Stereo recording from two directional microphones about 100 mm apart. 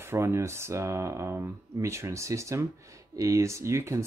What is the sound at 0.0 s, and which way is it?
Speech, 25° right (ahead or behind).